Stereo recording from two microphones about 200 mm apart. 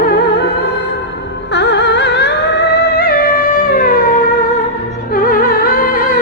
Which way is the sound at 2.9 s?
45° left (ahead or behind).